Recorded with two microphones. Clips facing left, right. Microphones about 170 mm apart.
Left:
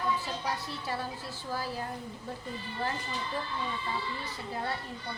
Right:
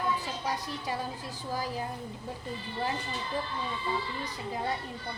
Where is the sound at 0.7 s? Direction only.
15° right (ahead or behind).